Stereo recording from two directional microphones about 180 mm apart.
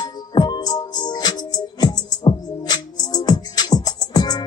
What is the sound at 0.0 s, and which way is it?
Music, 25° left (ahead or behind).